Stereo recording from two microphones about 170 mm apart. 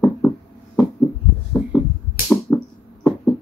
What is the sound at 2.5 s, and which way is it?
Music, 15° left (ahead or behind).